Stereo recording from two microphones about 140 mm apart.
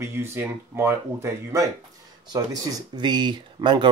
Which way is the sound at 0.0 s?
15° right (ahead or behind).